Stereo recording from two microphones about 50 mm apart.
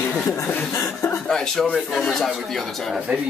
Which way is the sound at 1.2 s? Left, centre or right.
Centre.